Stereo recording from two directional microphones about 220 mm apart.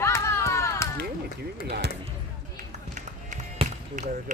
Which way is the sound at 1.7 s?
50° right (ahead or behind).